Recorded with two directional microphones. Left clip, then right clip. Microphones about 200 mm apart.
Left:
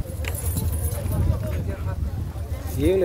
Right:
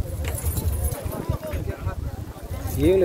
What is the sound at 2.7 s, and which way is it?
Speech, centre (ahead or behind).